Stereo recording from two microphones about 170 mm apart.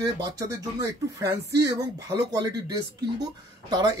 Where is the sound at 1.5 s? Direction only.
80° right.